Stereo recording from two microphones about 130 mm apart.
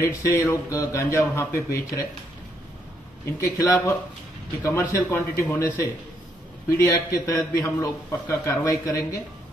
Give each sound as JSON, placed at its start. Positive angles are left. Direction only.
{"t": 0.0, "sound": "a man's voice", "side_deg": 20}
{"t": 3.3, "sound": "a man's voice", "side_deg": 25}